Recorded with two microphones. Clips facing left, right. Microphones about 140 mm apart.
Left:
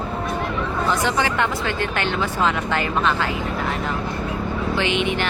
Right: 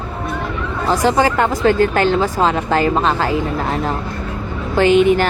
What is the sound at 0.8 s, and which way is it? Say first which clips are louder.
Speech: right 8 dB; 35° right (ahead or behind).